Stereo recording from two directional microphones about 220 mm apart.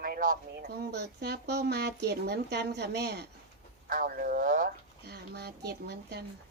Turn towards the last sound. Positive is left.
turn(degrees=-50)  # may be behind; listen again after turning